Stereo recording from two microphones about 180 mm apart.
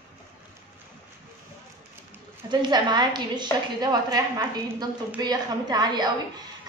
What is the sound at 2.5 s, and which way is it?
A woman's voice, 25° right (ahead or behind).